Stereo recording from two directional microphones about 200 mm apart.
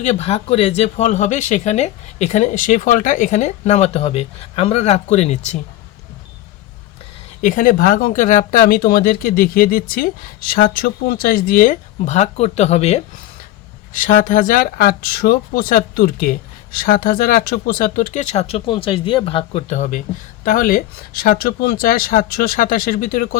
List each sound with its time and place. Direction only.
0.0 s speech: 35° left (ahead or behind)
7.4 s speech: 45° left (ahead or behind)